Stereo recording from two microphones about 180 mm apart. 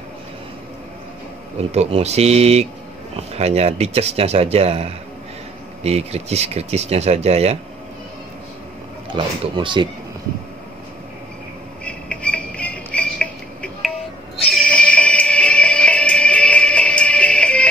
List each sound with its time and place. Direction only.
1.7 s speech: 35° right (ahead or behind)
9.1 s speech: 25° right (ahead or behind)
11.8 s music: 5° left (ahead or behind)